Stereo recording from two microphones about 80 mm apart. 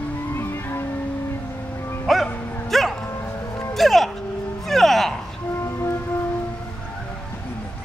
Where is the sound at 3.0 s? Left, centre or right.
Left.